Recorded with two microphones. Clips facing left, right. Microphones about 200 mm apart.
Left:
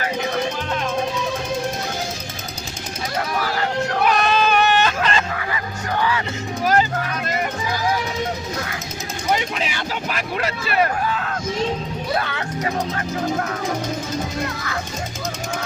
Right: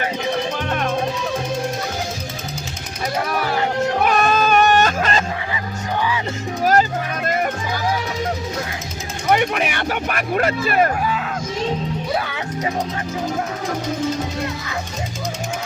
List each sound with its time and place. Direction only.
4.0 s music: 45° right (ahead or behind)
6.0 s music: 15° right (ahead or behind)
9.3 s speech: 60° right (ahead or behind)
11.0 s speech: 10° right (ahead or behind)